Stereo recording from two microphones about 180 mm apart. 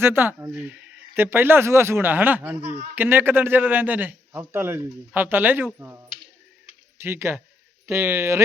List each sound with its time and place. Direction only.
0.0 s a man's voice: 10° right (ahead or behind)
2.6 s speech: 40° right (ahead or behind)
2.9 s a man's voice: 10° right (ahead or behind)